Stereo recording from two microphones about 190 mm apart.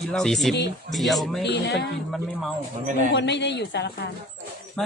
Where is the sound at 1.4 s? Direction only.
65° left (ahead or behind).